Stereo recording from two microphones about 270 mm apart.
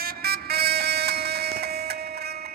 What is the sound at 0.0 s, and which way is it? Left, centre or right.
Vehicle, right.